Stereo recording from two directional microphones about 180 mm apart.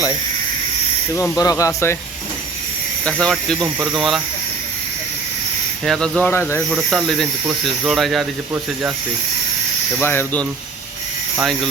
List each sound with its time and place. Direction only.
1.1 s speech: 15° left (ahead or behind)
3.0 s speech: 5° left (ahead or behind)
5.8 s speech: centre (ahead or behind)
6.7 s speech: centre (ahead or behind)
10.0 s speech: 10° left (ahead or behind)